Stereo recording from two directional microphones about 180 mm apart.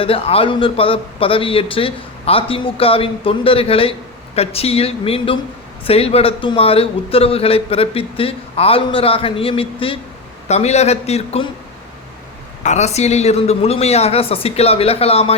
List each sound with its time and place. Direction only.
0.0 s a man's voice: 30° left (ahead or behind)
12.6 s a man's voice: 40° left (ahead or behind)